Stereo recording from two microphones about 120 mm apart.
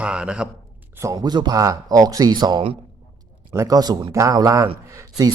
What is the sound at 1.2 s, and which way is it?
A man's voice, 35° right (ahead or behind).